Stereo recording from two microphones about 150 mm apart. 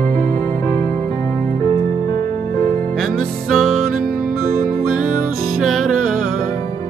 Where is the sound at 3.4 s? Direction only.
Centre (ahead or behind).